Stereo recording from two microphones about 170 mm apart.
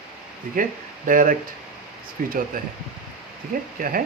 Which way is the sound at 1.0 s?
55° right (ahead or behind).